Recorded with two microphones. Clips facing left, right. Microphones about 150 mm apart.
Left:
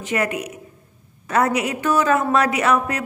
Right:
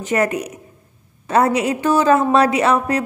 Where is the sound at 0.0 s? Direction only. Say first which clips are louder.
Right 4 dB; 40° right (ahead or behind).